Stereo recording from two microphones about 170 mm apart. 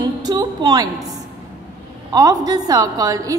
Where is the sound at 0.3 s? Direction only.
25° right (ahead or behind).